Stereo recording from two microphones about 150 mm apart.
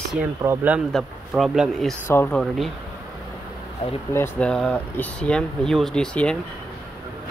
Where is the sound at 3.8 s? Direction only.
40° left (ahead or behind).